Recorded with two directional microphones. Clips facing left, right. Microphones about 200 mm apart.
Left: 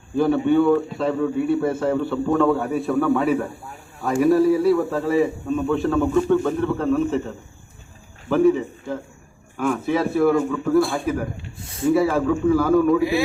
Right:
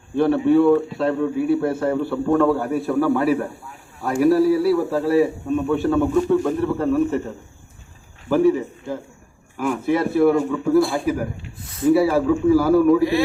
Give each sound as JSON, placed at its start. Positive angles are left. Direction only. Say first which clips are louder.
{"t": 0.2, "sound": "a man's voice", "louder": "right 2 dB", "side_deg": 0}
{"t": 11.6, "sound": "speech", "louder": "right 1 dB", "side_deg": 30}
{"t": 11.9, "sound": "a man's voice", "louder": "right 2 dB", "side_deg": -5}